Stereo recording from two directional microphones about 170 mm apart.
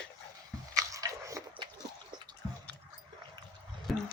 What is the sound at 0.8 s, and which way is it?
Biting, 20° right (ahead or behind).